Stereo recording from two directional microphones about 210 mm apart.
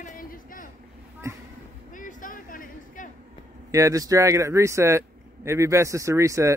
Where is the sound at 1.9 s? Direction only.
40° left (ahead or behind).